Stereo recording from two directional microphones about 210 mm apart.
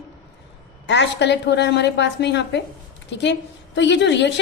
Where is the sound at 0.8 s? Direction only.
55° left (ahead or behind).